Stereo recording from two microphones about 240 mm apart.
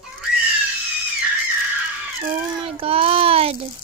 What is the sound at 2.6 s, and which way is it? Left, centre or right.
A child's voice, right.